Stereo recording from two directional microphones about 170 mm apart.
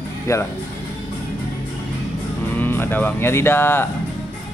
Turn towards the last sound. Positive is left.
turn(degrees=15)  # may be behind; listen again after turning